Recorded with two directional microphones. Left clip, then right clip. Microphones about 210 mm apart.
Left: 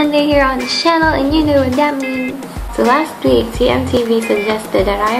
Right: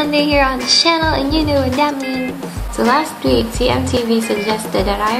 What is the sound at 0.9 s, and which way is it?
Speech, 15° right (ahead or behind).